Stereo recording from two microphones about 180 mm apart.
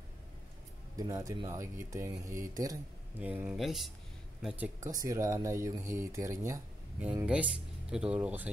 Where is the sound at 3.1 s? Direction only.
10° right (ahead or behind).